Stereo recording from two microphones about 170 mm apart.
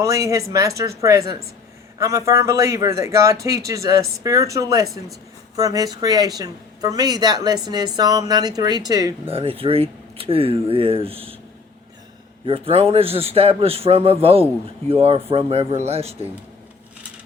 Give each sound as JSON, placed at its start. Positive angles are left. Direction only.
{"t": 0.0, "sound": "speech", "side_deg": -20}
{"t": 9.2, "sound": "speech", "side_deg": -35}
{"t": 12.5, "sound": "speech", "side_deg": -35}